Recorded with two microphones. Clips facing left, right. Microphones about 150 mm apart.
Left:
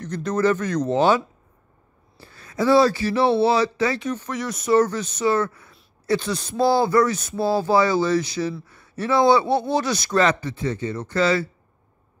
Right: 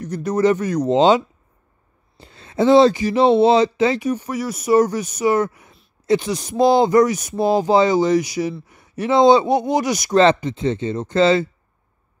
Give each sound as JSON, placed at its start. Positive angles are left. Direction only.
{"t": 0.0, "sound": "speech", "side_deg": -10}